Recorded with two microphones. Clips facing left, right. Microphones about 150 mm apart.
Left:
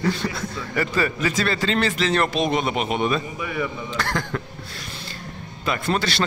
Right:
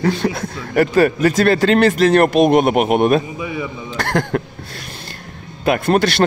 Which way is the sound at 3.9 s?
55° right (ahead or behind).